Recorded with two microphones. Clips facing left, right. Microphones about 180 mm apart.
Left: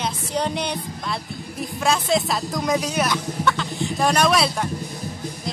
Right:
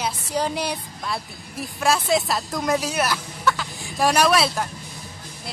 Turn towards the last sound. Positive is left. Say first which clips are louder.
# even
turn(degrees=0)  # may be behind; listen again after turning